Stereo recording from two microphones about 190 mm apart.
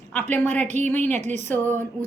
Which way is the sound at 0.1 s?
10° left (ahead or behind).